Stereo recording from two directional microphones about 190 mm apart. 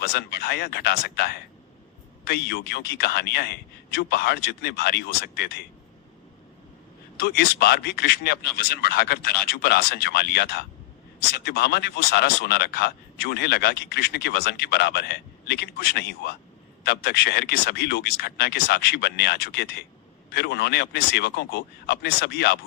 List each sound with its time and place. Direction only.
0.0 s speech: 55° left (ahead or behind)
7.2 s speech: 55° left (ahead or behind)